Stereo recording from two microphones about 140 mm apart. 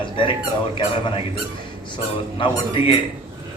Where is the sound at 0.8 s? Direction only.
40° left (ahead or behind).